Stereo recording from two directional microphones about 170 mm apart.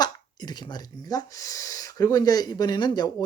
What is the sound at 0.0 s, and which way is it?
Speech, 25° left (ahead or behind).